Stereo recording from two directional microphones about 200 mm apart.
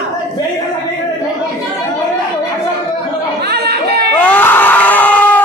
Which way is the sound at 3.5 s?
55° right (ahead or behind).